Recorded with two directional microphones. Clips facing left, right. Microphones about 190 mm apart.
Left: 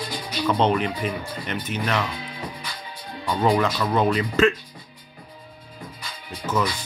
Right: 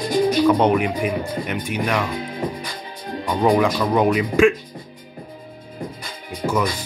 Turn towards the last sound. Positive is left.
turn(degrees=-10)  # may be behind; listen again after turning